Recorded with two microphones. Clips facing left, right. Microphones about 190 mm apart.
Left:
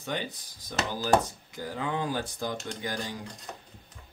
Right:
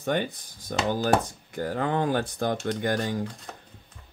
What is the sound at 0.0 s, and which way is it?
Speech, 50° right (ahead or behind).